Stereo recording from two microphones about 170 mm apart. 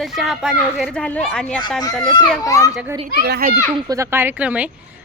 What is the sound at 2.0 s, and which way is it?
Speech, 25° left (ahead or behind).